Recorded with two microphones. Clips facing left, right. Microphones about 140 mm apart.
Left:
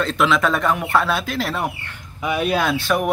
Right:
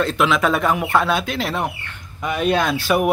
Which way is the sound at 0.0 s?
5° right (ahead or behind).